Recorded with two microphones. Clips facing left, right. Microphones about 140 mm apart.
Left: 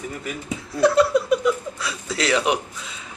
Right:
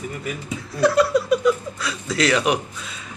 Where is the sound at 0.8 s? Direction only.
25° left (ahead or behind).